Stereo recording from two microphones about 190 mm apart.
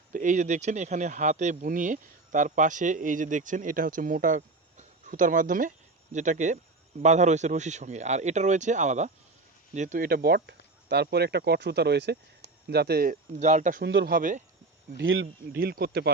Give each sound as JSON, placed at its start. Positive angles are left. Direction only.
{"t": 0.1, "sound": "speech", "side_deg": -45}
{"t": 13.8, "sound": "speech", "side_deg": -65}
{"t": 14.9, "sound": "speech", "side_deg": -85}
{"t": 15.5, "sound": "speech", "side_deg": -50}